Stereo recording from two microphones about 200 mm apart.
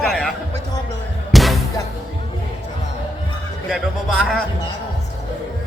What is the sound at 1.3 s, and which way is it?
Music, centre (ahead or behind).